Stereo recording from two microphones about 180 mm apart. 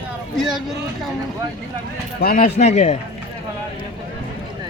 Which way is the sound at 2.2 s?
50° left (ahead or behind).